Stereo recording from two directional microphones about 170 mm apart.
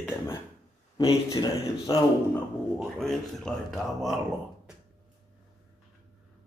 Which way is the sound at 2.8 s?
Centre (ahead or behind).